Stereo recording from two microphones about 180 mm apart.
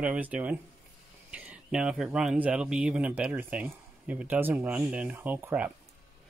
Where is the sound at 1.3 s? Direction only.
5° right (ahead or behind).